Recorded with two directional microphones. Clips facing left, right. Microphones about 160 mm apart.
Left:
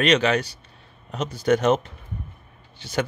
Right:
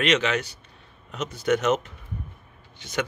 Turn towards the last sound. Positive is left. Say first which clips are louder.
# left 3 dB
turn(degrees=30)  # may be behind; listen again after turning